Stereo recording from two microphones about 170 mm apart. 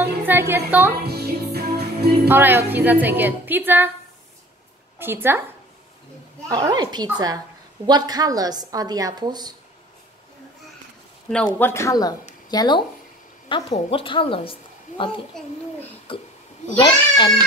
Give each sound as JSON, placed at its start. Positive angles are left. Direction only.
{"t": 0.0, "sound": "speech", "side_deg": -10}
{"t": 1.0, "sound": "music", "side_deg": -70}
{"t": 2.2, "sound": "a woman's voice", "side_deg": -10}
{"t": 4.9, "sound": "a woman's voice", "side_deg": -15}
{"t": 6.5, "sound": "a woman's voice", "side_deg": -25}
{"t": 11.2, "sound": "a woman's voice", "side_deg": 5}